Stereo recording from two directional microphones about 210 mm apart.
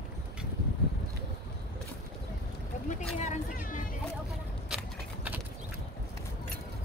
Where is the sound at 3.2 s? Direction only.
35° left (ahead or behind).